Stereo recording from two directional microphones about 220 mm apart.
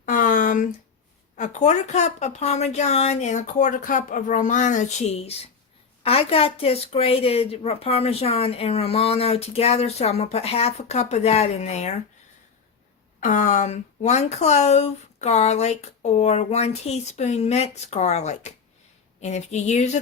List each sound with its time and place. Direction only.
0.0 s a sound: 35° left (ahead or behind)
1.4 s a woman's voice: 35° left (ahead or behind)
13.1 s speech: 35° left (ahead or behind)